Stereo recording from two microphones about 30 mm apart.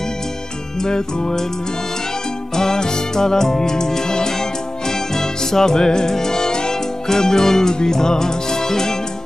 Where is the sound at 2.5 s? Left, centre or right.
Centre.